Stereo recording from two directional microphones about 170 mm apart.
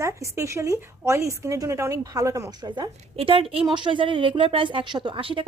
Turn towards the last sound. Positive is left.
turn(degrees=-30)  # may be behind; listen again after turning